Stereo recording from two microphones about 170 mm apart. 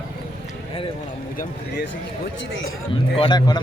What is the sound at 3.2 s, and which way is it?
Speech, 25° left (ahead or behind).